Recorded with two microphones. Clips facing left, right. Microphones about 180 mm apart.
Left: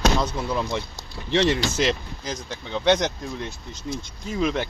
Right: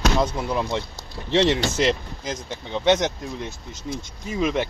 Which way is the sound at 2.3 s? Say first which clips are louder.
Right 1 dB; 25° right (ahead or behind).